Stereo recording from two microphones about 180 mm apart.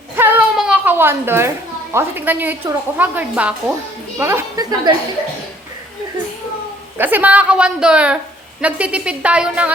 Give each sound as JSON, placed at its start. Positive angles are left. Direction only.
{"t": 0.2, "sound": "a child's voice", "side_deg": -5}
{"t": 7.0, "sound": "a woman's voice", "side_deg": -10}